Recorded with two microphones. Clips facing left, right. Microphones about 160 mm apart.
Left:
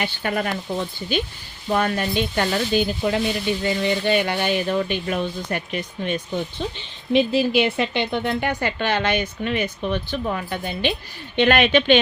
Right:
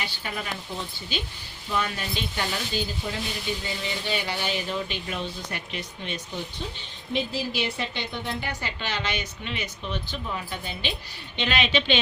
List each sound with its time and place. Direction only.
0.0 s speech: 60° left (ahead or behind)
6.6 s speech: 80° left; by 11.9 s 55° left (ahead or behind)